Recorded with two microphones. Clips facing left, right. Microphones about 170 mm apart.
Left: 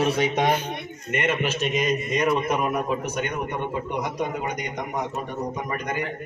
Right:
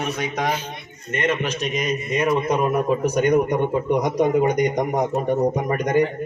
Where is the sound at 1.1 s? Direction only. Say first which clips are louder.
Right 2 dB; 10° left (ahead or behind).